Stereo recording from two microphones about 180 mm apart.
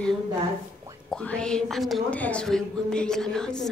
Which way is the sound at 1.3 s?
5° left (ahead or behind).